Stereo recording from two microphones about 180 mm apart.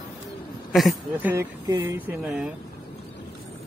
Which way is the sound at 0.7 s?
Centre (ahead or behind).